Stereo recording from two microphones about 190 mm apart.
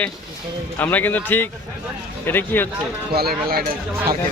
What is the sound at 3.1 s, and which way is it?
Speech, 55° right (ahead or behind).